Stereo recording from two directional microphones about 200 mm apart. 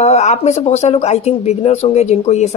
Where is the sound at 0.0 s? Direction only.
35° left (ahead or behind).